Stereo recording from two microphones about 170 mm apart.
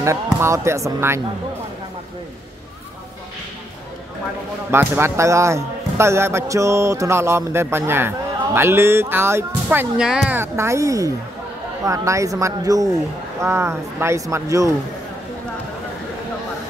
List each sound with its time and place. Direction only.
0.0 s a man's voice: 15° right (ahead or behind)
4.6 s a man's voice: 15° right (ahead or behind)